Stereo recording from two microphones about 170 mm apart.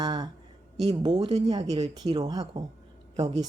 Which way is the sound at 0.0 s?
25° right (ahead or behind).